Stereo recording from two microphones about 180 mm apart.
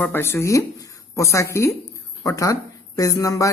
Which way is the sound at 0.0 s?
15° left (ahead or behind).